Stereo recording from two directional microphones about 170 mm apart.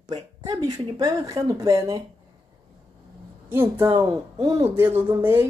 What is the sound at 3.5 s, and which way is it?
Speech, 10° right (ahead or behind).